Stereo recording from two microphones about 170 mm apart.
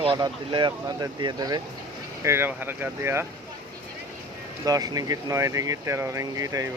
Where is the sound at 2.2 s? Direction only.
15° right (ahead or behind).